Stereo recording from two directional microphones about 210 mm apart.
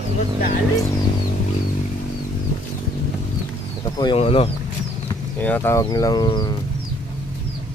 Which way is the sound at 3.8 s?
20° left (ahead or behind).